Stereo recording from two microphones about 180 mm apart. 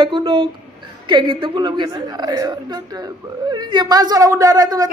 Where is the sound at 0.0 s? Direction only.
30° right (ahead or behind).